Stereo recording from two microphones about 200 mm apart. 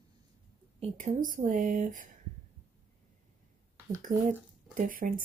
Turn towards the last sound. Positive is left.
turn(degrees=-40)  # may be behind; listen again after turning